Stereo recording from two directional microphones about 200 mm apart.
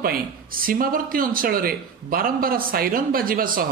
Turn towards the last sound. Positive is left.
turn(degrees=-45)  # may be behind; listen again after turning